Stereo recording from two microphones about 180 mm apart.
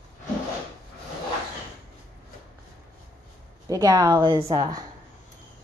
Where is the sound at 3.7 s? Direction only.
20° right (ahead or behind).